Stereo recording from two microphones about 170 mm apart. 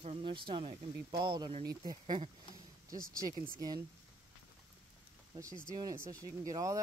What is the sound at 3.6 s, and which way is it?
Speech, 20° right (ahead or behind).